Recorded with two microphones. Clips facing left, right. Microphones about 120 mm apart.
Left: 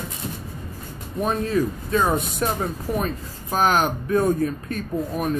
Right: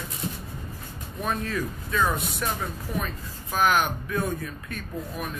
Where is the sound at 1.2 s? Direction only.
30° left (ahead or behind).